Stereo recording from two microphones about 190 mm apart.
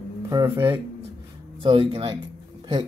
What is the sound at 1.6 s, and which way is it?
Speech, 30° right (ahead or behind).